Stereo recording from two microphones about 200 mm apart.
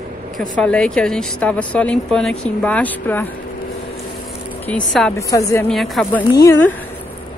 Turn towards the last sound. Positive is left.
turn(degrees=15)  # may be behind; listen again after turning